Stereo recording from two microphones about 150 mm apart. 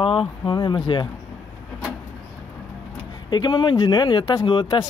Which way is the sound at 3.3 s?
30° left (ahead or behind).